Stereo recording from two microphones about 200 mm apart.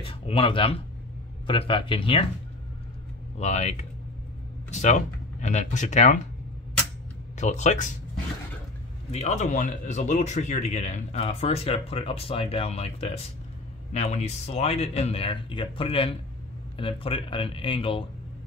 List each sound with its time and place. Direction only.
0.0 s speech: 25° left (ahead or behind)
3.3 s speech: 35° left (ahead or behind)
7.3 s speech: 35° left (ahead or behind)
9.1 s speech: 35° left (ahead or behind)